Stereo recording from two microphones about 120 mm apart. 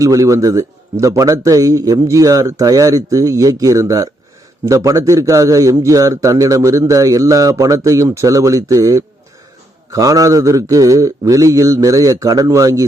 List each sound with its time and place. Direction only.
0.0 s a man's voice: 30° right (ahead or behind)